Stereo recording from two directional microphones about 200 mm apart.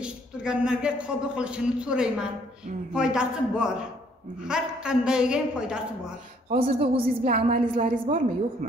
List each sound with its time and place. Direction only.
0.0 s a man's voice: 5° right (ahead or behind)
6.5 s a woman's voice: 35° right (ahead or behind)